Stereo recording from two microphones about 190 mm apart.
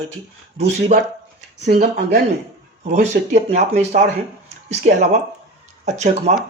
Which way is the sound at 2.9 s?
35° right (ahead or behind).